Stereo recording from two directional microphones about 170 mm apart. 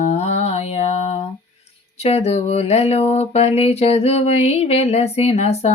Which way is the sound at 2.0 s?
40° left (ahead or behind).